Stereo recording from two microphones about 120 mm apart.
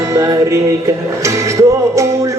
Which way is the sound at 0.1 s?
25° right (ahead or behind).